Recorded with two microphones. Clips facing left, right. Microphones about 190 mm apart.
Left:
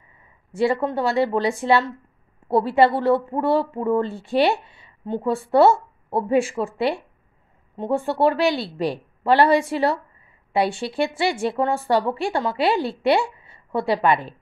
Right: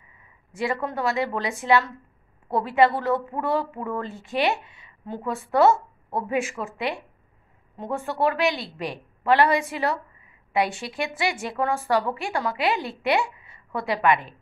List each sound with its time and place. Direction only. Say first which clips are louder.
0.5 s speech: left 6 dB; 30° left (ahead or behind)